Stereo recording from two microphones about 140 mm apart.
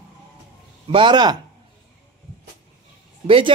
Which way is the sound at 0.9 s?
35° right (ahead or behind).